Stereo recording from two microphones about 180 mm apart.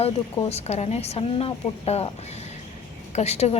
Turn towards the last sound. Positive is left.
turn(degrees=35)  # may be behind; listen again after turning